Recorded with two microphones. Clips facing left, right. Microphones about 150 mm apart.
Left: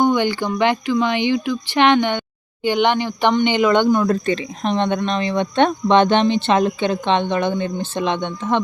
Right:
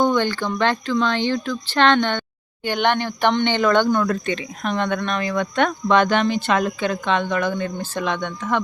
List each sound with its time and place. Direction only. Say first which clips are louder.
0.0 s speech: left 2 dB; 15° left (ahead or behind)
4.0 s speech: left 4 dB; 30° left (ahead or behind)